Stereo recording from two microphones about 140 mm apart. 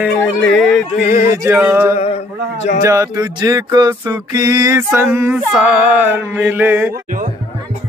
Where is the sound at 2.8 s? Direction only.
25° right (ahead or behind).